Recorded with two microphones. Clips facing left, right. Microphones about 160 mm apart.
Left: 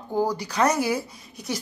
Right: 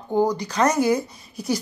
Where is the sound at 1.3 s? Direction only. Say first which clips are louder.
Right 6 dB; centre (ahead or behind).